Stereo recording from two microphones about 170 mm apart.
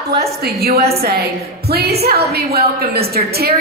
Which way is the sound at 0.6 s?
65° right (ahead or behind).